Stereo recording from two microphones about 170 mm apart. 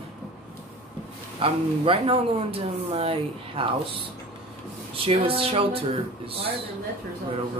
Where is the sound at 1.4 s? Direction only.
30° right (ahead or behind).